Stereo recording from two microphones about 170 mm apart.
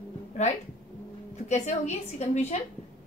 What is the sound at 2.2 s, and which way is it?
Speech, 40° left (ahead or behind).